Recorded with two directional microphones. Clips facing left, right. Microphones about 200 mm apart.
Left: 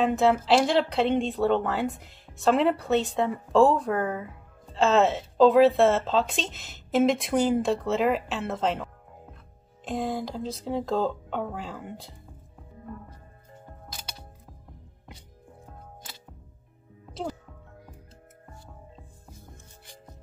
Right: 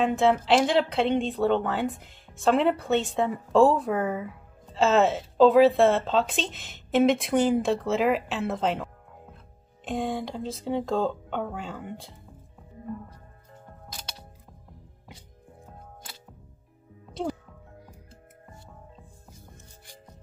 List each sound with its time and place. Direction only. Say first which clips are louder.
0.0 s speech: even; centre (ahead or behind)
13.8 s music: right 1 dB; centre (ahead or behind)